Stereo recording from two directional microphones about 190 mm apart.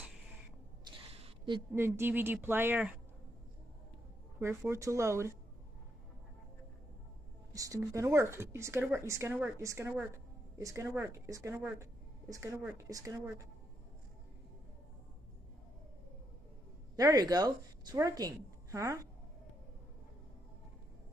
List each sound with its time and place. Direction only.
0.8 s a sound: 30° right (ahead or behind)
1.8 s a woman's voice: 10° right (ahead or behind)
4.6 s a woman's voice: 15° right (ahead or behind)
7.5 s a woman's voice: 15° right (ahead or behind)
16.9 s a woman's voice: 20° right (ahead or behind)